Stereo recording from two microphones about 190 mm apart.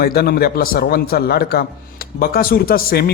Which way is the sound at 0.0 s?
55° left (ahead or behind).